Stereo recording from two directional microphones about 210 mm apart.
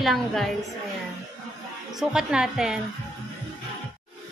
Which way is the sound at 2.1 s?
5° right (ahead or behind).